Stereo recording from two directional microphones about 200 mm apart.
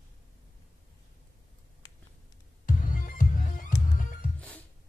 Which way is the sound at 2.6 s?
40° left (ahead or behind).